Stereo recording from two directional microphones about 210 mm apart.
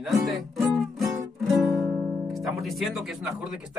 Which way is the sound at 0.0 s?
Centre (ahead or behind).